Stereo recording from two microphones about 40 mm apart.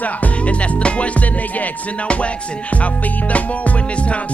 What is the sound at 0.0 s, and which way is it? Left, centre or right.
Music, left.